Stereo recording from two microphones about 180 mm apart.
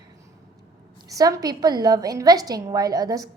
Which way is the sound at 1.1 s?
20° right (ahead or behind).